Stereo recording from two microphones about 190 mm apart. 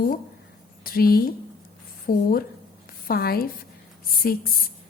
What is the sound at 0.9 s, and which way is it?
Speech, 50° left (ahead or behind).